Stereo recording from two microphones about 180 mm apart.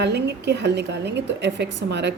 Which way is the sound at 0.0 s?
70° right (ahead or behind).